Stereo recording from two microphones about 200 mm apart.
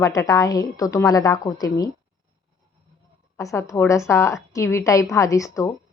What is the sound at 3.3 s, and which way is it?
A woman's voice, 15° left (ahead or behind).